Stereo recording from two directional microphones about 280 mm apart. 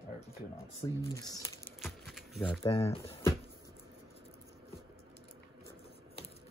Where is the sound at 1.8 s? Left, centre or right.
Centre.